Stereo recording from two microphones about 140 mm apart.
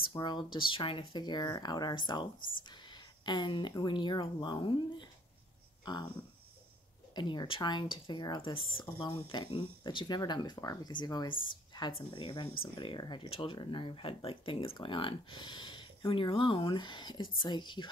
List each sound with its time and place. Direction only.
0.2 s speech: 35° left (ahead or behind)
7.2 s speech: 35° left (ahead or behind)